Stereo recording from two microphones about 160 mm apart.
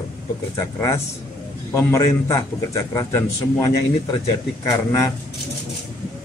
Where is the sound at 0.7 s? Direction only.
15° left (ahead or behind).